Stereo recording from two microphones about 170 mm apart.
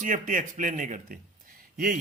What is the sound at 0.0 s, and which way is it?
A man's voice, 50° right (ahead or behind).